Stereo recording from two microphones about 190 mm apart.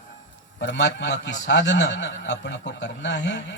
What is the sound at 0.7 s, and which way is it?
Speech, 65° left (ahead or behind).